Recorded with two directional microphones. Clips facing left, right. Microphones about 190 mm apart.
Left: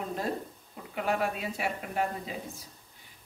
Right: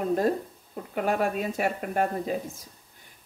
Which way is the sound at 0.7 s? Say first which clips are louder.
Right 4 dB; 45° right (ahead or behind).